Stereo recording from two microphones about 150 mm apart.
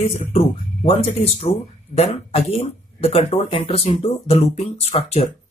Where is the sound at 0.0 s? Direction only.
45° left (ahead or behind).